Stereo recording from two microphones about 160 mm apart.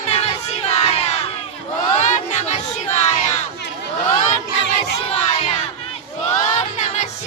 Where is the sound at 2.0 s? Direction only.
45° left (ahead or behind).